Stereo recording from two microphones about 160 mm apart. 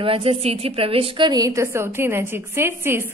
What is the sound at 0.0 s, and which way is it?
A woman's voice, 35° right (ahead or behind).